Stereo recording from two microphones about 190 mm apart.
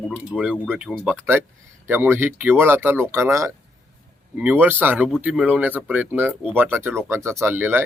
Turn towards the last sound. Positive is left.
turn(degrees=-10)  # may be behind; listen again after turning